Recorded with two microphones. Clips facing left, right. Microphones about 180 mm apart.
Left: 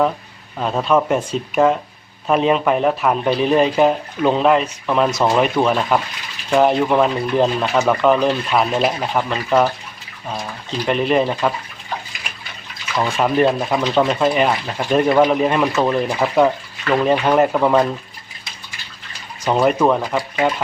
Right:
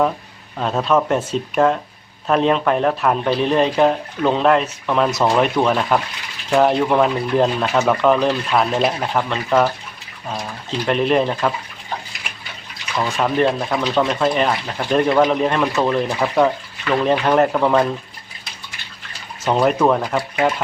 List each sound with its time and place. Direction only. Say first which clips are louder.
0.6 s speech: left 1 dB; centre (ahead or behind)
10.8 s speech: even; centre (ahead or behind)
13.1 s speech: left 2 dB; centre (ahead or behind)
13.4 s speech: left 1 dB; 10° left (ahead or behind)
19.5 s speech: even; 5° left (ahead or behind)